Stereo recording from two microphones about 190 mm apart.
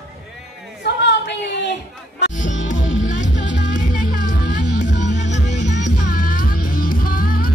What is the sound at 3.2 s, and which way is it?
Music, 70° left (ahead or behind).